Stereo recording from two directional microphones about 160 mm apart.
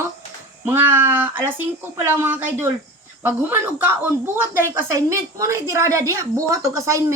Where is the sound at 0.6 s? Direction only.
10° right (ahead or behind).